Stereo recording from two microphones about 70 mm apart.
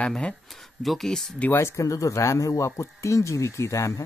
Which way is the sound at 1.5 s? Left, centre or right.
Left.